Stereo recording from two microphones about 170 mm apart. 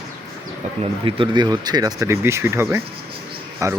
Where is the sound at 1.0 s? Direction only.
30° right (ahead or behind).